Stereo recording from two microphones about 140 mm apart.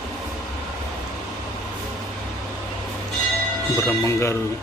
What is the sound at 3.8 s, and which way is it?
Speech, 20° left (ahead or behind).